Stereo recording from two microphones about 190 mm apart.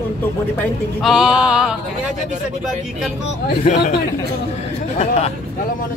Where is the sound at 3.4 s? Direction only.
55° left (ahead or behind).